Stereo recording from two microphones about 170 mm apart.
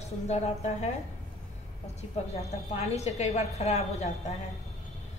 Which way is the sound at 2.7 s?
40° left (ahead or behind).